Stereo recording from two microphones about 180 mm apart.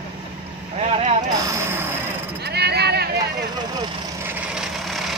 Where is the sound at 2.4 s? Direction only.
65° right (ahead or behind).